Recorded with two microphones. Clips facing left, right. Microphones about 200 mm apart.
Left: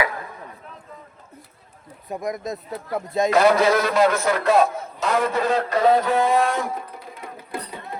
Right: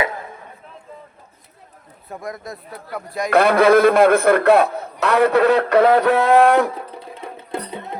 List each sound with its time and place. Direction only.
2.0 s speech: 20° left (ahead or behind)
3.3 s a man's voice: 55° right (ahead or behind)
7.1 s music: 25° right (ahead or behind)